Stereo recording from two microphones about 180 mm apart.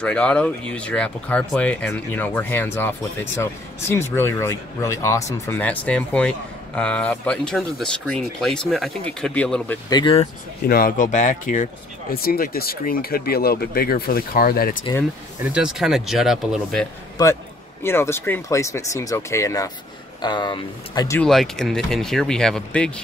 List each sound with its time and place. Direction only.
0.0 s speech: 5° left (ahead or behind)
4.1 s speech: 15° left (ahead or behind)
9.8 s speech: 25° left (ahead or behind)
10.7 s speech: 50° left (ahead or behind)
15.5 s speech: 5° right (ahead or behind)
17.2 s speech: 20° left (ahead or behind)
21.2 s speech: centre (ahead or behind)